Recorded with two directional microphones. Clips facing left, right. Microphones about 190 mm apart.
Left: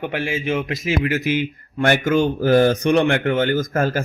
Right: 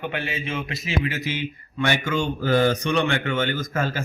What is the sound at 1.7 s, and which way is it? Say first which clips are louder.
A man's voice: left 7 dB; 50° left (ahead or behind).